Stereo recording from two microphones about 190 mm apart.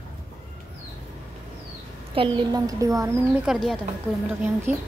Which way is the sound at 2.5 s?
15° right (ahead or behind).